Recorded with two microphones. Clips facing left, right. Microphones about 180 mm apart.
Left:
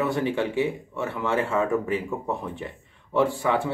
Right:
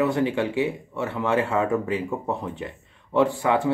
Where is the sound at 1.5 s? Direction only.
20° right (ahead or behind).